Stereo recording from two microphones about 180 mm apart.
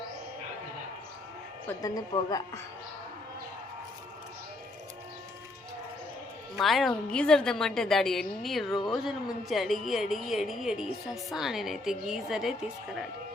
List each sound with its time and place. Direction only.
1.8 s a woman's voice: 20° left (ahead or behind)
6.6 s speech: centre (ahead or behind)